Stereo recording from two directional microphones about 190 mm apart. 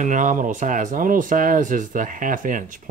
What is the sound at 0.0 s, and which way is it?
Speech, 40° right (ahead or behind).